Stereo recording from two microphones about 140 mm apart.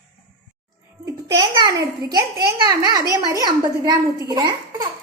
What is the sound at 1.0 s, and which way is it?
A child's voice, 30° right (ahead or behind).